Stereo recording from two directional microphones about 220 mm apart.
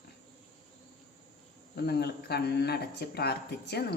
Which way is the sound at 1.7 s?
45° left (ahead or behind).